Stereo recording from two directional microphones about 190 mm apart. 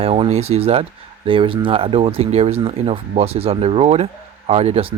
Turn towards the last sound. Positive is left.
turn(degrees=-30)  # may be behind; listen again after turning